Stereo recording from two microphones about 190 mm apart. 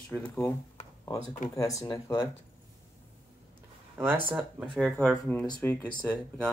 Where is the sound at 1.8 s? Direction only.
25° left (ahead or behind).